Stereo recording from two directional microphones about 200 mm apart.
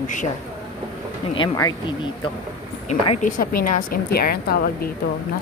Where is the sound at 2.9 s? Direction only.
35° left (ahead or behind).